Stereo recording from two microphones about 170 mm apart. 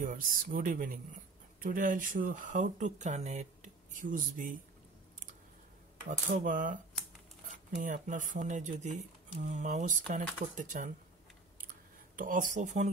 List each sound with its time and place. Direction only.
0.0 s speech: 55° right (ahead or behind)
6.0 s speech: 50° right (ahead or behind)
7.8 s speech: 50° right (ahead or behind)
12.2 s speech: 50° right (ahead or behind)